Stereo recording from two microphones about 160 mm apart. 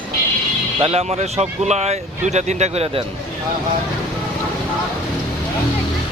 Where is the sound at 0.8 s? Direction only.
40° right (ahead or behind).